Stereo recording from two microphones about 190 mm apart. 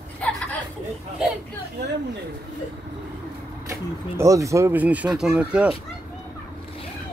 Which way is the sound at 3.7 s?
15° right (ahead or behind).